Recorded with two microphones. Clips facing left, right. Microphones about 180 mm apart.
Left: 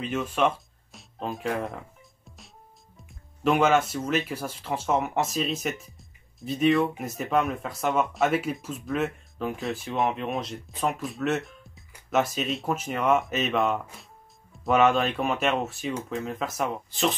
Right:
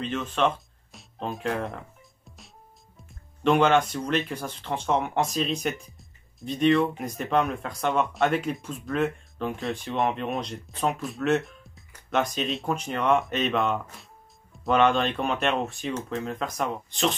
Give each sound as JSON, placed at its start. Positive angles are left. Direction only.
{"t": 0.0, "sound": "speech", "side_deg": 10}
{"t": 3.0, "sound": "speech", "side_deg": 0}